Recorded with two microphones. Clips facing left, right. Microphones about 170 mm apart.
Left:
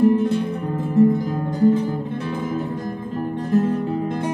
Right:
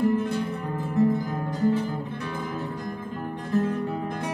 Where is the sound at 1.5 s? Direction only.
20° left (ahead or behind).